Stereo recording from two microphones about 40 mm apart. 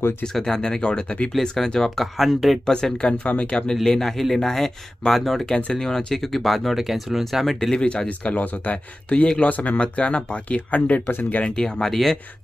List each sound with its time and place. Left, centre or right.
0.2 s speech: centre
2.1 s speech: centre
2.6 s speech: left; by 7.7 s centre
7.7 s speech: left
11.1 s speech: left
11.4 s speech: centre